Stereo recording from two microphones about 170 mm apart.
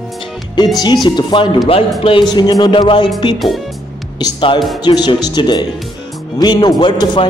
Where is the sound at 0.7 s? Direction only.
25° left (ahead or behind).